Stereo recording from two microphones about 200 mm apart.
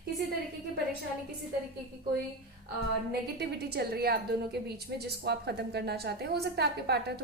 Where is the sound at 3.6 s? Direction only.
55° right (ahead or behind).